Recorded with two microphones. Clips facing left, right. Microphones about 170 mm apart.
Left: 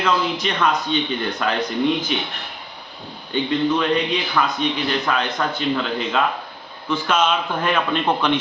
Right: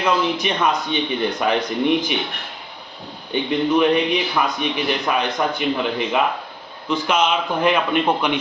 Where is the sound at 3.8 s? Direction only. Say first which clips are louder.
Right 4 dB; 15° right (ahead or behind).